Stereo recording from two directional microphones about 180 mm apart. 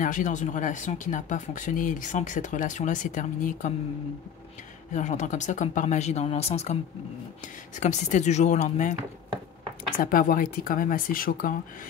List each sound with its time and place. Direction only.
0.0 s speech: 45° left (ahead or behind)
4.9 s speech: 40° left (ahead or behind)
9.9 s speech: 50° left (ahead or behind)